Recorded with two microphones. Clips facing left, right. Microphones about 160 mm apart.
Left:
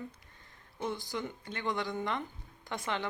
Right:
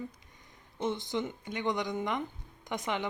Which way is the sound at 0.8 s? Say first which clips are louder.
Right 4 dB; 20° right (ahead or behind).